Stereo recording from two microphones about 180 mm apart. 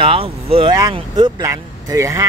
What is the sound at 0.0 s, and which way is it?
Speech, 30° right (ahead or behind).